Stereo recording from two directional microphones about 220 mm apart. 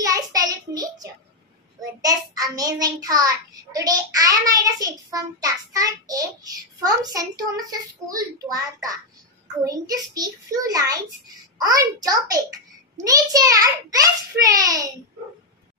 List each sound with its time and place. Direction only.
0.0 s child singing: 15° right (ahead or behind)
2.0 s a child's voice: 15° right (ahead or behind)